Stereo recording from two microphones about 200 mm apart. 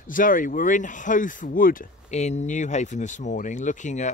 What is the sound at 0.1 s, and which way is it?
Speech, 40° left (ahead or behind).